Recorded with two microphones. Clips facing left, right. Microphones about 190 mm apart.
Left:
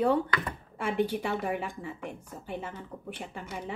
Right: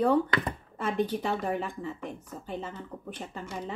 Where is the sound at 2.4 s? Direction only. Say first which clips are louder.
Even; 60° left (ahead or behind).